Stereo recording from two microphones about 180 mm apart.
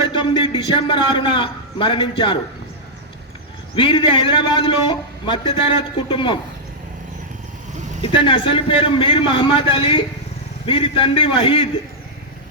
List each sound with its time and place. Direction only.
0.0 s a man's voice: 25° left (ahead or behind)
3.8 s a man's voice: 30° left (ahead or behind)
8.0 s a man's voice: 30° left (ahead or behind)